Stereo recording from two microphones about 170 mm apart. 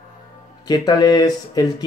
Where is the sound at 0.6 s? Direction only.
25° left (ahead or behind).